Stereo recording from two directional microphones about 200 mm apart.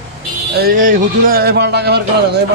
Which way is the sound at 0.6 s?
45° right (ahead or behind).